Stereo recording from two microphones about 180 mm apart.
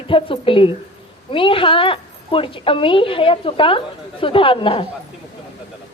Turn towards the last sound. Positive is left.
turn(degrees=30)  # may be behind; listen again after turning